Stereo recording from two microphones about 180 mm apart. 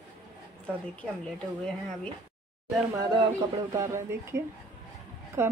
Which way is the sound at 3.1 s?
20° right (ahead or behind).